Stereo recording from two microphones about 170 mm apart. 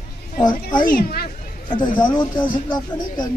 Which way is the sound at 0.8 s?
60° left (ahead or behind).